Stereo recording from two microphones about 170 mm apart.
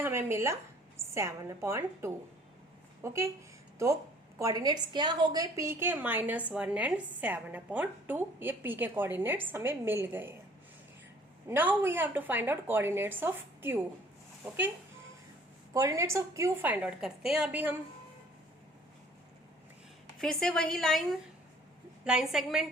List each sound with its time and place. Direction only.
0.0 s a woman's voice: 15° right (ahead or behind)
4.4 s a woman's voice: 20° right (ahead or behind)
11.4 s a woman's voice: 10° right (ahead or behind)
15.7 s a woman's voice: 20° right (ahead or behind)
20.1 s a woman's voice: 5° left (ahead or behind)